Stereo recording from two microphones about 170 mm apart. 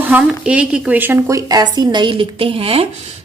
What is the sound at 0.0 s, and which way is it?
A woman's voice, 10° right (ahead or behind).